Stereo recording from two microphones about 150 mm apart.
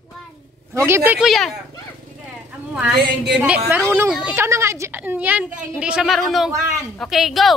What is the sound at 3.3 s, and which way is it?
A woman's voice, 10° right (ahead or behind).